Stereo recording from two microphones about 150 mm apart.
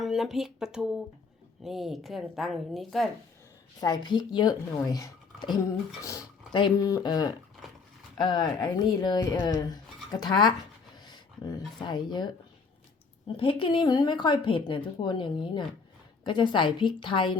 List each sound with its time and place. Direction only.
0.0 s a woman's voice: centre (ahead or behind)
3.8 s speech: 30° left (ahead or behind)